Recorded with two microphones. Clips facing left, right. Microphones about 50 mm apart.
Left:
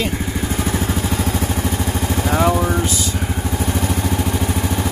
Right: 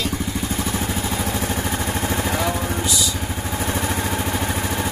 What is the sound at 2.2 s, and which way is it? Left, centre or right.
Vehicle, left.